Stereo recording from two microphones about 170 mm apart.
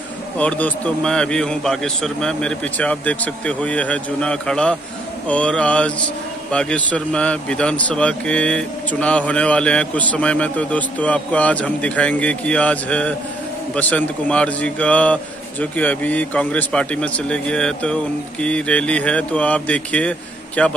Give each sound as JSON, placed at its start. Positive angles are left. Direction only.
{"t": 0.4, "sound": "a man's voice", "side_deg": 10}